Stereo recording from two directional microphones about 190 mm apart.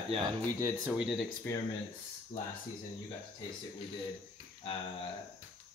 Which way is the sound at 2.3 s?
40° left (ahead or behind).